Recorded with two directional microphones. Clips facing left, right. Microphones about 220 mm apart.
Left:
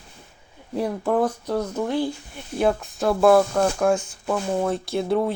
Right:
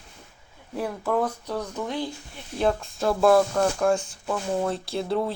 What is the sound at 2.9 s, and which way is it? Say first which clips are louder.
Speech: left 3 dB; 30° left (ahead or behind).